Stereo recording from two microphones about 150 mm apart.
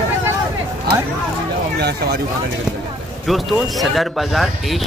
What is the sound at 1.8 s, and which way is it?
Speech, 90° right.